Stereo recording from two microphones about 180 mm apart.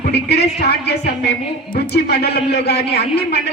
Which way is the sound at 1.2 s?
65° left (ahead or behind).